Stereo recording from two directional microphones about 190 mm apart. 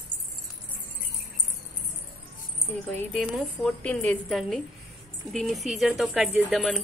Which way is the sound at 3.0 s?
5° left (ahead or behind).